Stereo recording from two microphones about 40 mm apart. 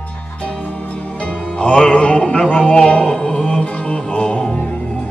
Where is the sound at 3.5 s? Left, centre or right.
Left.